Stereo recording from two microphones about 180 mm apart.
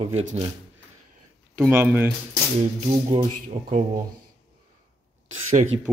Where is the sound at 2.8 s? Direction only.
30° right (ahead or behind).